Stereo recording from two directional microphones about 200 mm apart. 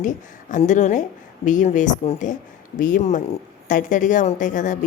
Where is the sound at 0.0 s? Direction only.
40° left (ahead or behind).